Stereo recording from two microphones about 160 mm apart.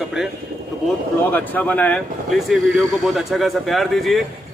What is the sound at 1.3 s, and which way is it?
Speech, 10° left (ahead or behind).